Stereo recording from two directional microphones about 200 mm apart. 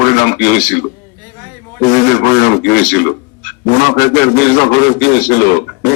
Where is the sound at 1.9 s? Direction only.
40° left (ahead or behind).